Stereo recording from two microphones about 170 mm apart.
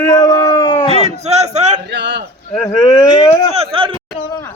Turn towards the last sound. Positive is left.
turn(degrees=-30)  # may be behind; listen again after turning